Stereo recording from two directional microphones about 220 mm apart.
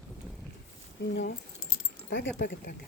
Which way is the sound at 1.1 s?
50° left (ahead or behind).